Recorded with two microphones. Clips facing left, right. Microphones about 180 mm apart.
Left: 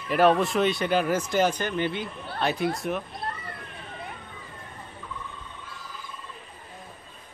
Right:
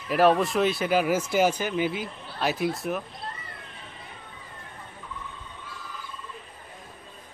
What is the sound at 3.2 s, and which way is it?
Children playing, 60° left (ahead or behind).